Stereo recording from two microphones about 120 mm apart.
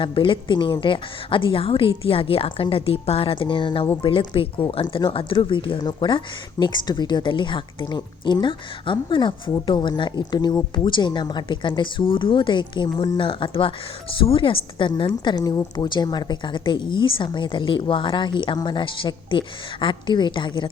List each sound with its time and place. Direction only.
0.0 s a woman's voice: 45° left (ahead or behind)